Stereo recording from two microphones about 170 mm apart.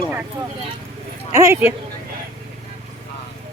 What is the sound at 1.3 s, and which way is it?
Speech, 20° right (ahead or behind).